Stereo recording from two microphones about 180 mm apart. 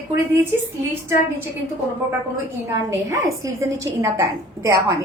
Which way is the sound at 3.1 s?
15° right (ahead or behind).